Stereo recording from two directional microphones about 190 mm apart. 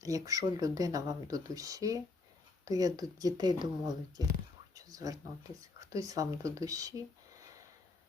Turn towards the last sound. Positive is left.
turn(degrees=-20)  # may be behind; listen again after turning